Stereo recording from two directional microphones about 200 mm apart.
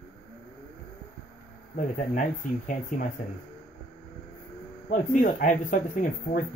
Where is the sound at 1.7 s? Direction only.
40° left (ahead or behind).